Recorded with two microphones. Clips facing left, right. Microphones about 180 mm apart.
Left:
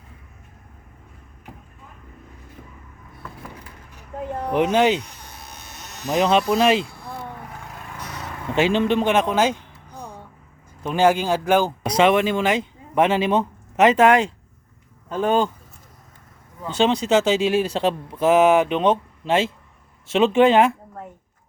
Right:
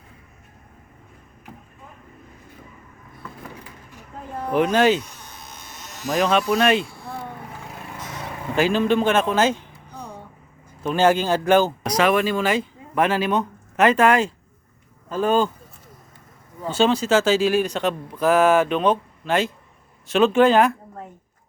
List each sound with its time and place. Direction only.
4.4 s speech: 20° left (ahead or behind)
6.1 s speech: 20° left (ahead or behind)
8.5 s speech: 25° left (ahead or behind)
10.8 s speech: 10° left (ahead or behind)
11.9 s speech: 25° left (ahead or behind)
16.6 s speech: 20° left (ahead or behind)